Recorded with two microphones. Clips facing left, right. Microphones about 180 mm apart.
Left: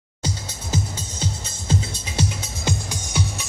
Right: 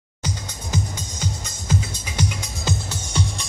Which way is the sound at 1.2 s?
30° left (ahead or behind).